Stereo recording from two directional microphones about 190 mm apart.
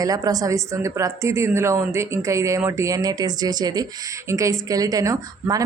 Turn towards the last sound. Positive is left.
turn(degrees=-20)  # may be behind; listen again after turning